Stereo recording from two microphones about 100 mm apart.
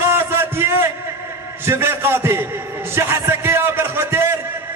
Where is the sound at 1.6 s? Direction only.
25° right (ahead or behind).